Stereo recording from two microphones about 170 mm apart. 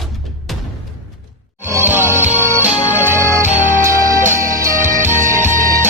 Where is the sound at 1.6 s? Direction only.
15° right (ahead or behind).